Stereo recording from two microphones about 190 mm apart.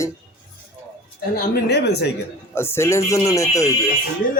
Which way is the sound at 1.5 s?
60° left (ahead or behind).